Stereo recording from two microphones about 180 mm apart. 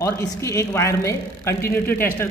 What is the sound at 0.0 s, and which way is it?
A man's voice, 15° left (ahead or behind).